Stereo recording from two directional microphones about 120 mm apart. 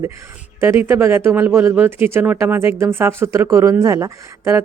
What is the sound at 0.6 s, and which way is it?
Speech, 20° right (ahead or behind).